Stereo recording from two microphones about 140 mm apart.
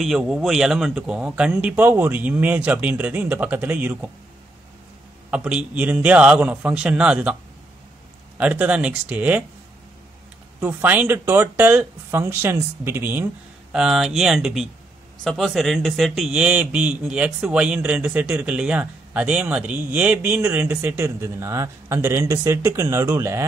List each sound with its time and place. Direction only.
0.0 s a man's voice: centre (ahead or behind)
5.3 s a man's voice: 5° right (ahead or behind)
8.4 s a man's voice: 10° right (ahead or behind)
10.6 s a man's voice: 15° right (ahead or behind)
13.7 s a man's voice: 5° right (ahead or behind); by 23.4 s 20° right (ahead or behind)